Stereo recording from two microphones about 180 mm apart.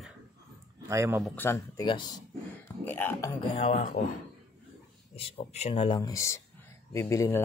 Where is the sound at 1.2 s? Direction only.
10° left (ahead or behind).